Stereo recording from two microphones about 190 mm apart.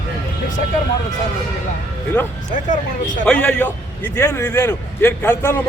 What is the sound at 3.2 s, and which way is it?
A man's voice, 5° left (ahead or behind).